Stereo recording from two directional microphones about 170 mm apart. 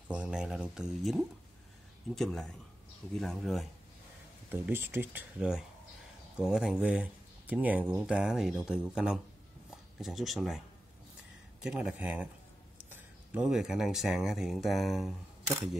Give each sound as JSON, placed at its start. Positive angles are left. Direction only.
{"t": 0.1, "sound": "speech", "side_deg": -5}
{"t": 4.5, "sound": "speech", "side_deg": -15}
{"t": 11.6, "sound": "speech", "side_deg": -5}